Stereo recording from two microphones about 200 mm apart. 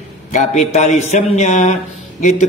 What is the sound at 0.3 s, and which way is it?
Speech, 35° left (ahead or behind).